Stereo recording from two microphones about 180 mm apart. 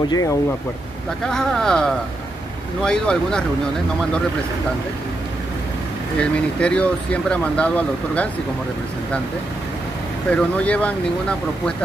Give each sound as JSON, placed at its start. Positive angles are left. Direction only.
{"t": 0.1, "sound": "speech", "side_deg": 20}
{"t": 1.2, "sound": "speech", "side_deg": 5}
{"t": 6.1, "sound": "speech", "side_deg": 5}
{"t": 10.3, "sound": "speech", "side_deg": 5}